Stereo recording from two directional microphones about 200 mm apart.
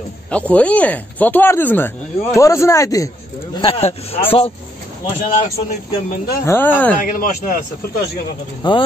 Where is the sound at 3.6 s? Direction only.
30° left (ahead or behind).